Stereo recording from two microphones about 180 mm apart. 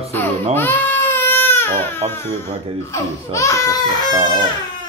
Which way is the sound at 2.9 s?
15° left (ahead or behind).